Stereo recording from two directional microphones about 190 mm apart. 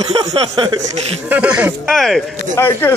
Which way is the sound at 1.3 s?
10° right (ahead or behind).